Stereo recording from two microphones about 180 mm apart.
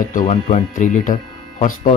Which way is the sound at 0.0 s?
45° left (ahead or behind).